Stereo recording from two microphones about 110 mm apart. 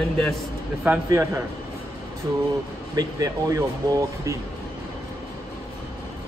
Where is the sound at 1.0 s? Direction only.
25° right (ahead or behind).